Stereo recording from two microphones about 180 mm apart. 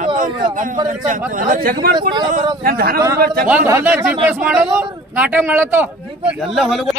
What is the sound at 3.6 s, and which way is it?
A man's voice, 15° right (ahead or behind).